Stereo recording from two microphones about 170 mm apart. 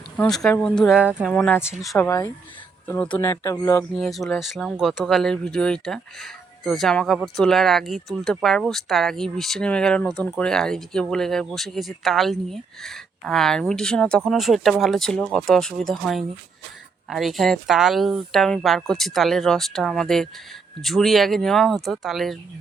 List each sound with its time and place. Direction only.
0.2 s speech: 5° left (ahead or behind)
0.9 s speech: 5° right (ahead or behind)
1.3 s speech: 10° left (ahead or behind)
2.8 s speech: 10° left (ahead or behind)
3.9 s speech: centre (ahead or behind)